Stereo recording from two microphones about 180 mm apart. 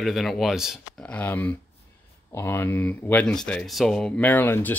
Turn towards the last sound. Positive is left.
turn(degrees=10)  # may be behind; listen again after turning